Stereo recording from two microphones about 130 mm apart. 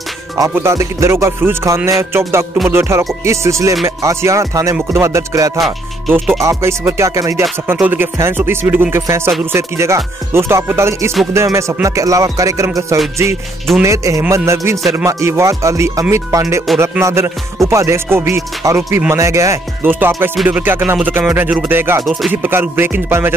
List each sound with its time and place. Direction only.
0.4 s music: 20° right (ahead or behind)
5.6 s speech: centre (ahead or behind)
6.4 s music: 20° right (ahead or behind)
7.6 s speech: 15° right (ahead or behind)
8.9 s music: 20° right (ahead or behind)
20.4 s speech: 15° right (ahead or behind)